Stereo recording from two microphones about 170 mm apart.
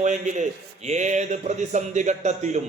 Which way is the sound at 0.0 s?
45° right (ahead or behind).